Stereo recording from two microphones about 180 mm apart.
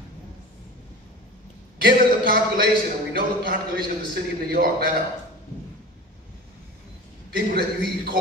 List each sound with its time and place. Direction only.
1.8 s speech: 55° right (ahead or behind)
7.2 s speech: 60° right (ahead or behind)